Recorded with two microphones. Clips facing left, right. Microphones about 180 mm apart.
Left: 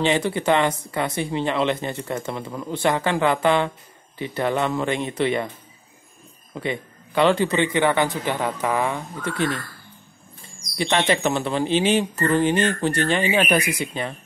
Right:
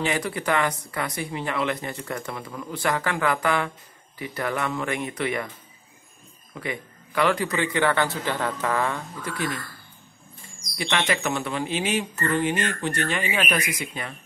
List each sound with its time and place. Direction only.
0.0 s speech: 25° left (ahead or behind)
6.5 s speech: 25° left (ahead or behind)
10.8 s speech: 30° left (ahead or behind)